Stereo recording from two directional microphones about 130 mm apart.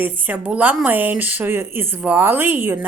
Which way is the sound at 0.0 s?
10° right (ahead or behind).